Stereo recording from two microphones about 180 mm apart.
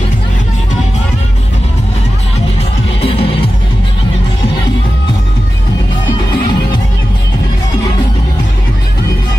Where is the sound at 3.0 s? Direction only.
35° left (ahead or behind).